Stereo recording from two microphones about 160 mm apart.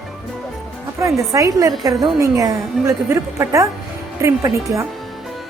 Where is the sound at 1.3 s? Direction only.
20° right (ahead or behind).